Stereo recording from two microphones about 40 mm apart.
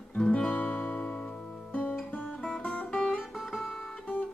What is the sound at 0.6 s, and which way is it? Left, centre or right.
Music, left.